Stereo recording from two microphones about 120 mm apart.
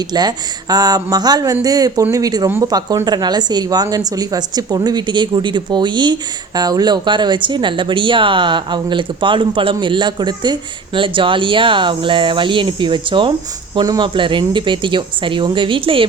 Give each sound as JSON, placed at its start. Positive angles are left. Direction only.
{"t": 0.0, "sound": "a woman's voice", "side_deg": -35}